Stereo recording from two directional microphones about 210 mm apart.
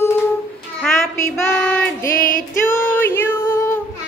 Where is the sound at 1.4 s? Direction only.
5° left (ahead or behind).